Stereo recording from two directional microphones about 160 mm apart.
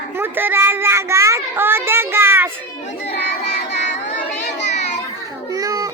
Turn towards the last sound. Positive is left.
turn(degrees=-20)  # may be behind; listen again after turning